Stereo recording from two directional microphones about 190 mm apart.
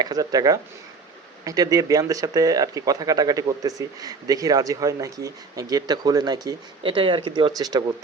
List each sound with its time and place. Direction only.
0.0 s speech: 20° right (ahead or behind)